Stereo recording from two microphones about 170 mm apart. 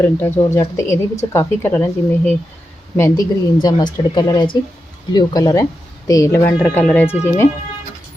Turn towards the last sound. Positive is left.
turn(degrees=15)  # may be behind; listen again after turning